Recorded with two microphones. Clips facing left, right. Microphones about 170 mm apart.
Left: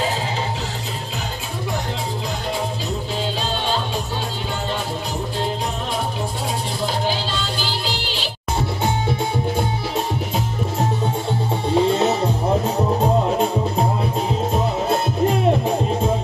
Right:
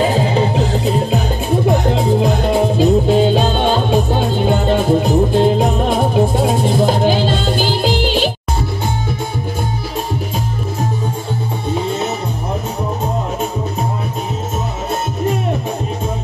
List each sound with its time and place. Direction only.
0.0 s music: 55° right (ahead or behind)